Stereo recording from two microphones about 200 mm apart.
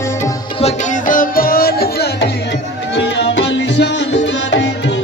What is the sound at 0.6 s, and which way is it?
Music, 40° left (ahead or behind).